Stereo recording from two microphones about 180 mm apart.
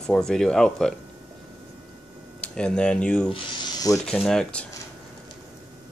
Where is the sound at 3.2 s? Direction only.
25° left (ahead or behind).